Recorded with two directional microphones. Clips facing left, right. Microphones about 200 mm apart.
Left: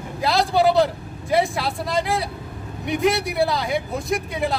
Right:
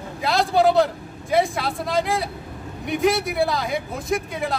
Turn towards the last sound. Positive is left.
turn(degrees=0)  # may be behind; listen again after turning